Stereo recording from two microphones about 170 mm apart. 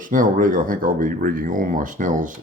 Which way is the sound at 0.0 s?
50° right (ahead or behind).